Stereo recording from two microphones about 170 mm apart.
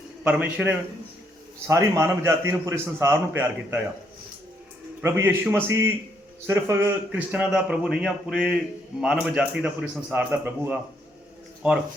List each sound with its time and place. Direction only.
0.3 s a man's voice: 10° right (ahead or behind)
5.0 s a man's voice: 15° right (ahead or behind)